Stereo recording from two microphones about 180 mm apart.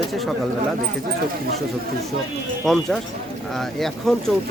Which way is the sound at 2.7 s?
Centre (ahead or behind).